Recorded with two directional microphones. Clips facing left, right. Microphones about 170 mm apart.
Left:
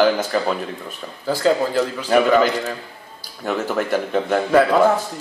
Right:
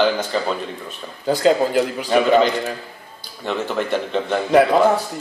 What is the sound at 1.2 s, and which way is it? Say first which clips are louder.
Speech: right 2 dB; 20° right (ahead or behind).